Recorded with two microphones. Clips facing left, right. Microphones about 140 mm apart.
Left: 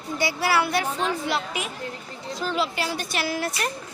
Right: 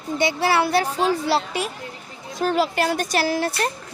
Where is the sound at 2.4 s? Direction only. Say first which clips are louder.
Right 6 dB; 50° right (ahead or behind).